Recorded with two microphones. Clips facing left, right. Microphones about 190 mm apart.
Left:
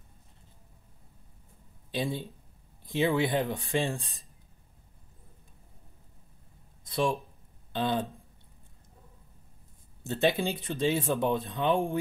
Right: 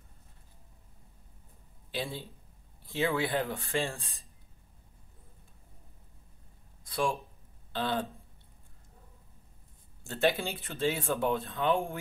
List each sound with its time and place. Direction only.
1.9 s speech: 15° left (ahead or behind)
6.8 s a sound: 20° left (ahead or behind)
7.7 s speech: 15° left (ahead or behind)
10.0 s speech: 20° left (ahead or behind)